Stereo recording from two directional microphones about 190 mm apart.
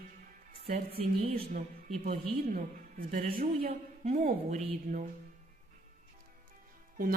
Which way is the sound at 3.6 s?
35° right (ahead or behind).